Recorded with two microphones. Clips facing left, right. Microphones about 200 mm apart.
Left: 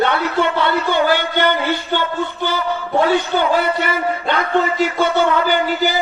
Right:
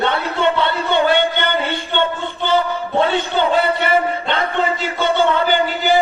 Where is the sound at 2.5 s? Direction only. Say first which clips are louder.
Right 3 dB; 25° right (ahead or behind).